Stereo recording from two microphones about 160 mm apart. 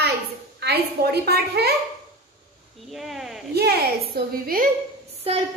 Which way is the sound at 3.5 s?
85° right.